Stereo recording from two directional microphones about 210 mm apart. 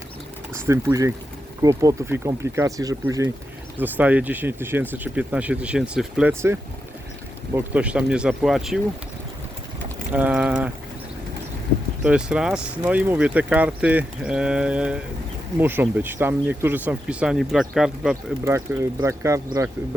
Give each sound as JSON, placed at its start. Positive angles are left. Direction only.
{"t": 0.5, "sound": "speech", "side_deg": -10}
{"t": 10.1, "sound": "speech", "side_deg": -5}
{"t": 12.0, "sound": "speech", "side_deg": -5}